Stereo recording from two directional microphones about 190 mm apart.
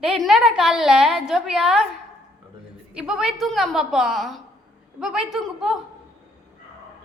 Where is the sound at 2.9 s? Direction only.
5° right (ahead or behind).